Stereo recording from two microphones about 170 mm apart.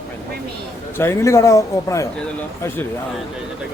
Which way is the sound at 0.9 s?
15° left (ahead or behind).